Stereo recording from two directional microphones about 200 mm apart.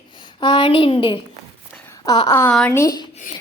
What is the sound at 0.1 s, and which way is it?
A woman's voice, 25° left (ahead or behind).